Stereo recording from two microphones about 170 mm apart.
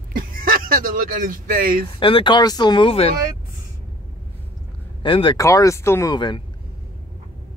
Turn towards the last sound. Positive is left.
turn(degrees=25)  # may be behind; listen again after turning